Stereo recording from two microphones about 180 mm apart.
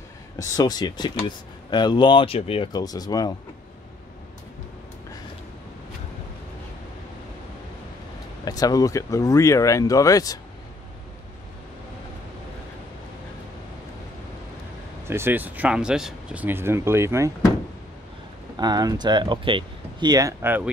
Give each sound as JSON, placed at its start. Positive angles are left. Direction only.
{"t": 0.4, "sound": "speech", "side_deg": 20}
{"t": 8.5, "sound": "speech", "side_deg": 20}
{"t": 15.0, "sound": "speech", "side_deg": -15}
{"t": 18.6, "sound": "speech", "side_deg": -20}